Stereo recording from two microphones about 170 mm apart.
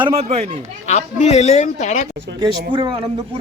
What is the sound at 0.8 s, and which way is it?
A man's voice, 40° left (ahead or behind).